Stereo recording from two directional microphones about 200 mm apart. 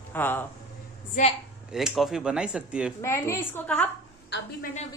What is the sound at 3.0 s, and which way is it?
Speech, 15° left (ahead or behind).